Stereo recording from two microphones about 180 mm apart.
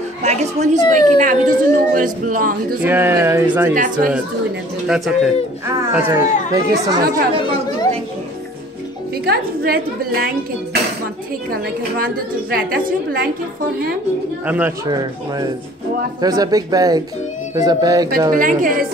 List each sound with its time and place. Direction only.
0.2 s speech: 40° right (ahead or behind)
2.8 s speech: 10° right (ahead or behind)
3.7 s speech: 45° right (ahead or behind)
4.8 s speech: centre (ahead or behind)
5.8 s speech: 15° right (ahead or behind)
9.2 s a woman's voice: 60° right (ahead or behind)
14.4 s speech: 10° right (ahead or behind)
14.9 s speech: 20° right (ahead or behind)
18.3 s speech: 50° right (ahead or behind)